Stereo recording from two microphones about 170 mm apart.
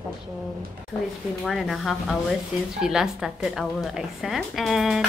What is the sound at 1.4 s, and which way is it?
A woman's voice, centre (ahead or behind).